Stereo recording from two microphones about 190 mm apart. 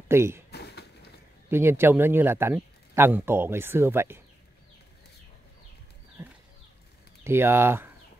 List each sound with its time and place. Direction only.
0.1 s speech: 15° right (ahead or behind)
0.5 s a sound: 60° left (ahead or behind)
1.5 s speech: 10° right (ahead or behind)
7.2 s speech: 10° right (ahead or behind)